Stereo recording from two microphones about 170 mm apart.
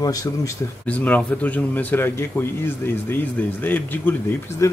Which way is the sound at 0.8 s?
10° left (ahead or behind).